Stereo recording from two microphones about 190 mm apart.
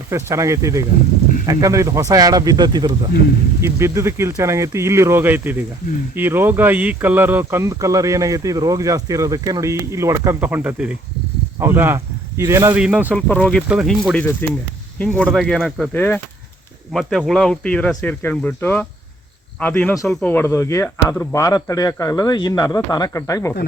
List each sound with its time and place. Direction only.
0.1 s speech: 15° right (ahead or behind)
13.1 s speech: 5° left (ahead or behind)
13.7 s speech: 5° right (ahead or behind); by 23.6 s 15° left (ahead or behind)